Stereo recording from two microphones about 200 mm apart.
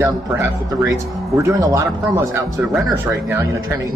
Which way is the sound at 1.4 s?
15° right (ahead or behind).